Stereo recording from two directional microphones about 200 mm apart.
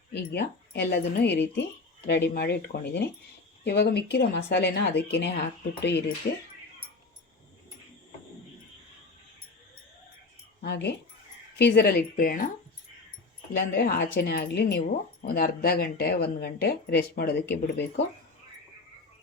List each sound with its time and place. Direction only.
0.1 s a woman's voice: 55° left (ahead or behind)
10.6 s speech: 55° left (ahead or behind)
13.7 s a woman's voice: 55° left (ahead or behind)